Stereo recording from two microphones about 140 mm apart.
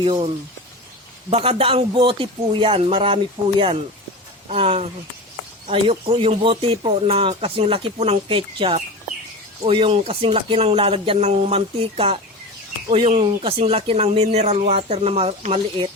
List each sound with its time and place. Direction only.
0.0 s speech: 40° right (ahead or behind)
1.3 s speech: 45° right (ahead or behind)
4.4 s speech: 50° right (ahead or behind)